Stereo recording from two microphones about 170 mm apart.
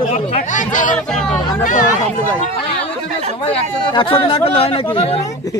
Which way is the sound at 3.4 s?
30° left (ahead or behind).